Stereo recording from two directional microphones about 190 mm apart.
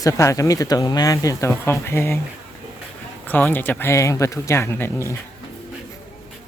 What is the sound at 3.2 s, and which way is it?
Speech, 10° left (ahead or behind).